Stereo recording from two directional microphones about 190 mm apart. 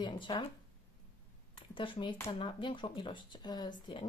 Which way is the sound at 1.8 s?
25° left (ahead or behind).